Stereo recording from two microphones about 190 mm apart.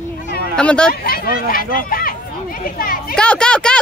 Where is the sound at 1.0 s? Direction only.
50° left (ahead or behind).